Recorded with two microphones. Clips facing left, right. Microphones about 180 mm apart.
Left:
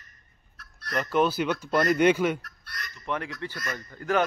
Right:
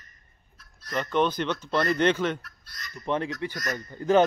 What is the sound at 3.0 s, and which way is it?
Speech, 25° right (ahead or behind).